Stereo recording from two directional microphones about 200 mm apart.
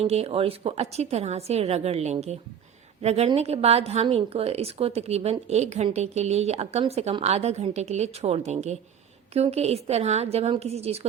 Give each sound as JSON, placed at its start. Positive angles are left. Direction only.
{"t": 0.0, "sound": "a woman's voice", "side_deg": -30}